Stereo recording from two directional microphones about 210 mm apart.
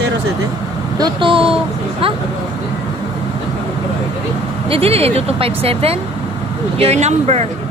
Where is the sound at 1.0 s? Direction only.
25° right (ahead or behind).